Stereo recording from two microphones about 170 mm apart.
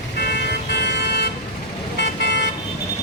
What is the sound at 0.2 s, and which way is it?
Vehicle, 75° left (ahead or behind).